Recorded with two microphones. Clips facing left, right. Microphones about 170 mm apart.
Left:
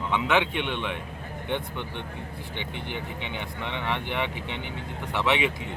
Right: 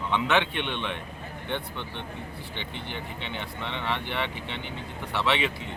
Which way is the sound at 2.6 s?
15° left (ahead or behind).